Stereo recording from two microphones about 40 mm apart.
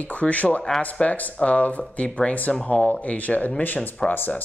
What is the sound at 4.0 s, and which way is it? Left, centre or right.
Speech, centre.